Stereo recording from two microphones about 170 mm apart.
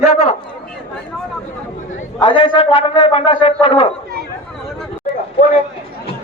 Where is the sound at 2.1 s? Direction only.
30° left (ahead or behind).